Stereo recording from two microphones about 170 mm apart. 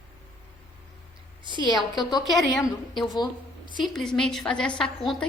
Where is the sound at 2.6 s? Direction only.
Centre (ahead or behind).